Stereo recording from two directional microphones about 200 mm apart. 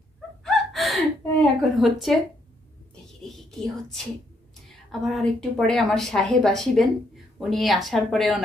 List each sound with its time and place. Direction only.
0.4 s gasp: centre (ahead or behind)
1.6 s a woman's voice: centre (ahead or behind)
3.3 s a woman's voice: centre (ahead or behind)